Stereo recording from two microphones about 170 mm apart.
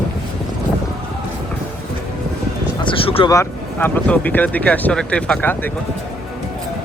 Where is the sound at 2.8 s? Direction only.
30° left (ahead or behind).